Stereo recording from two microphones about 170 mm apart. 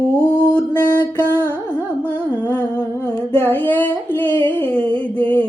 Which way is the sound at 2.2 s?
10° right (ahead or behind).